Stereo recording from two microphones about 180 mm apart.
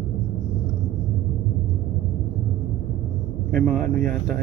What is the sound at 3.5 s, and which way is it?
Speech, 55° right (ahead or behind).